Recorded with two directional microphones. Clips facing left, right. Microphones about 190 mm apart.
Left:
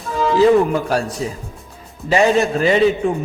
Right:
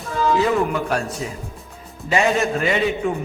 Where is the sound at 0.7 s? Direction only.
35° left (ahead or behind).